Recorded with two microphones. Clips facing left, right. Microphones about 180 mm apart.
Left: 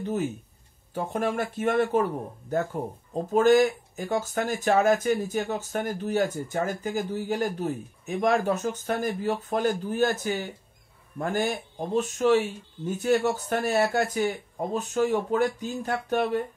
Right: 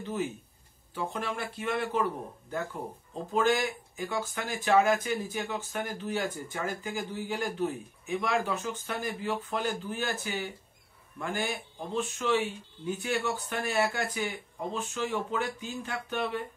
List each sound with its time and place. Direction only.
0.0 s speech: 45° left (ahead or behind)
3.3 s speech: 45° left (ahead or behind)